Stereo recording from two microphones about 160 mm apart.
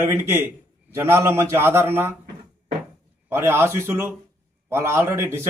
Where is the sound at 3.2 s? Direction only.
15° right (ahead or behind).